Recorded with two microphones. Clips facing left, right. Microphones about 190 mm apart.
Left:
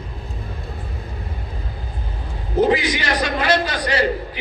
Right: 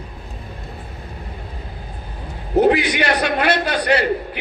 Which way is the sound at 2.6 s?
65° right (ahead or behind).